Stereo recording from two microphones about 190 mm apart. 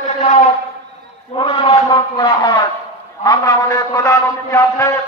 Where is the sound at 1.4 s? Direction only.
25° left (ahead or behind).